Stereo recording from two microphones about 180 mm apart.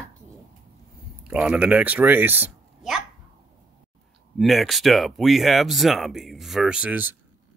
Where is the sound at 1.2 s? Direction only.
5° right (ahead or behind).